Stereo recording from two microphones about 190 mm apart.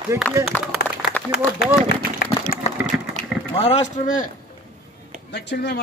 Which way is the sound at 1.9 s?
50° left (ahead or behind).